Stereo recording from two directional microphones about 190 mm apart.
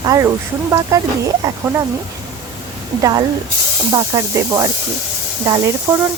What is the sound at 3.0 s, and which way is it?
Speech, 20° right (ahead or behind).